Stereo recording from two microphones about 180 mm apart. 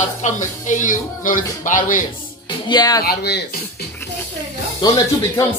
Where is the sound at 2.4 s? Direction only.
25° left (ahead or behind).